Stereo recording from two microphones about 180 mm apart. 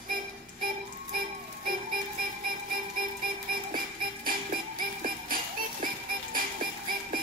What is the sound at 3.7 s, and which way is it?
Music, 50° right (ahead or behind).